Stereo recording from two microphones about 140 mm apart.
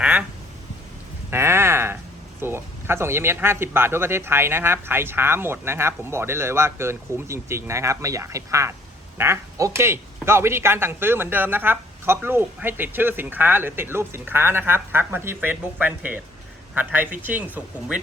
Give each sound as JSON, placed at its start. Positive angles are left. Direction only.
{"t": 0.0, "sound": "quack", "side_deg": -10}
{"t": 1.3, "sound": "a sound", "side_deg": -20}
{"t": 2.4, "sound": "speech", "side_deg": -15}